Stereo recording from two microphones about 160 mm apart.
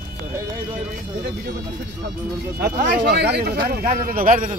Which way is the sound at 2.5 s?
75° right (ahead or behind).